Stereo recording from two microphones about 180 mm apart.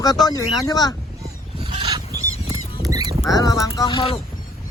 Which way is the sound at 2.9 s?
20° right (ahead or behind).